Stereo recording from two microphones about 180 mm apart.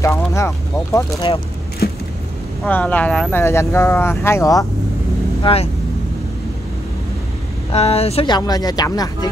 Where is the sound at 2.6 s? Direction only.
10° left (ahead or behind).